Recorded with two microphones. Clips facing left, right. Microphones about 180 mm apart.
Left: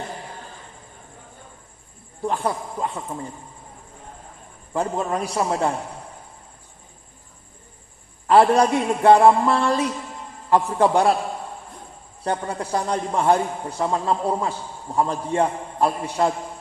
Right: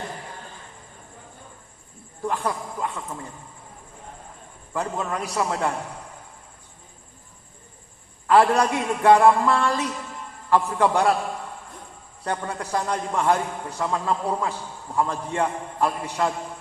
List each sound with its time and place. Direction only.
2.2 s a man's voice: 25° left (ahead or behind)
4.7 s a man's voice: 25° left (ahead or behind)
8.3 s a man's voice: 25° left (ahead or behind)
12.2 s a man's voice: 25° left (ahead or behind)